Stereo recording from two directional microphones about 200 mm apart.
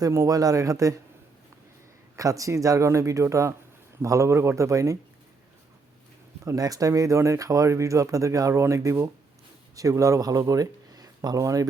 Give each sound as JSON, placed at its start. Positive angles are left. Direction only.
{"t": 0.0, "sound": "speech", "side_deg": -15}
{"t": 2.1, "sound": "speech", "side_deg": -15}
{"t": 6.4, "sound": "speech", "side_deg": -15}